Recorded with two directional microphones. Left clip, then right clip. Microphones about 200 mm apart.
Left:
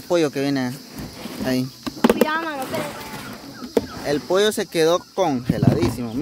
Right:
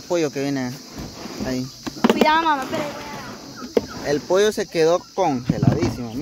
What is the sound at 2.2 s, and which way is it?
Speech, 50° right (ahead or behind).